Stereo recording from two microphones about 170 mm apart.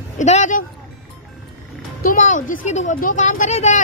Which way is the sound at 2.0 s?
45° left (ahead or behind).